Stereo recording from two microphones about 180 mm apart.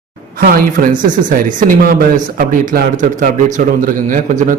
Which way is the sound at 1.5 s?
50° right (ahead or behind).